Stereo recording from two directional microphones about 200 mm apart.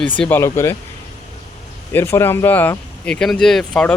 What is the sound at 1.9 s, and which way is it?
Speech, 10° left (ahead or behind).